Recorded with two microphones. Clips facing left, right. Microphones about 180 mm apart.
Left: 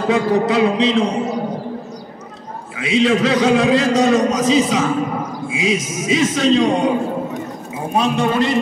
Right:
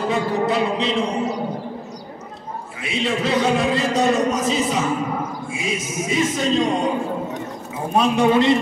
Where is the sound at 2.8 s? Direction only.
90° left.